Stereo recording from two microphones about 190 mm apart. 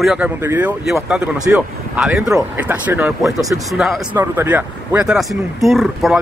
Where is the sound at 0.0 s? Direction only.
5° right (ahead or behind).